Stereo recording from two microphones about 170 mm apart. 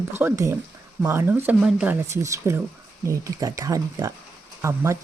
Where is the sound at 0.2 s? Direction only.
15° right (ahead or behind).